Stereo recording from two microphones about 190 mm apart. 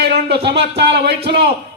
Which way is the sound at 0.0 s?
60° right (ahead or behind).